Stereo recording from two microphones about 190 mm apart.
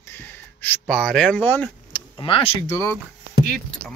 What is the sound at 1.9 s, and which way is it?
Speech, 25° left (ahead or behind).